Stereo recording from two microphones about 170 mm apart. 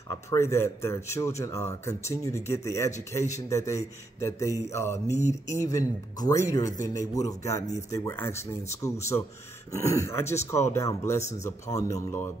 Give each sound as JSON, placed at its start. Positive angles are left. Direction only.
{"t": 0.3, "sound": "speech", "side_deg": 15}
{"t": 11.1, "sound": "speech", "side_deg": 40}
{"t": 11.7, "sound": "speech", "side_deg": 20}